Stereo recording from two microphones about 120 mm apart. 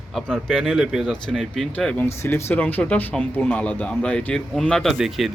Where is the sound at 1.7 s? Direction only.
10° left (ahead or behind).